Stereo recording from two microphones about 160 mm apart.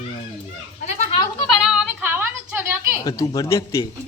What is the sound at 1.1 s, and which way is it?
Speech, 20° left (ahead or behind).